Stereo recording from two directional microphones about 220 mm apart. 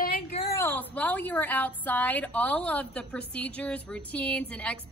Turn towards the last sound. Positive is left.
turn(degrees=5)  # may be behind; listen again after turning